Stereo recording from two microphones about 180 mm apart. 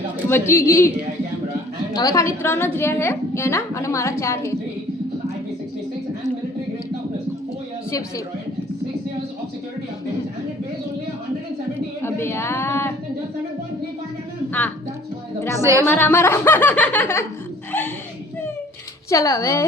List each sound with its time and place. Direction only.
0.3 s a woman's voice: 15° left (ahead or behind)
1.9 s a woman's voice: 20° left (ahead or behind)
12.0 s a sound: 15° left (ahead or behind)
15.8 s a woman's voice: 10° left (ahead or behind)
17.7 s a sound: 10° left (ahead or behind)
19.1 s a woman's voice: 20° left (ahead or behind)